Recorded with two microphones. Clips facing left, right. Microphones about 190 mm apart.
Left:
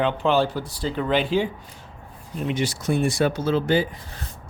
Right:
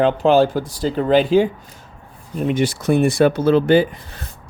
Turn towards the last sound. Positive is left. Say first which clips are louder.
# right 7 dB
turn(degrees=-60)  # may be behind; listen again after turning